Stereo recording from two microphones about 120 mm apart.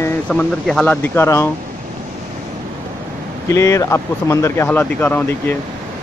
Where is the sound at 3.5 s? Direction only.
25° left (ahead or behind).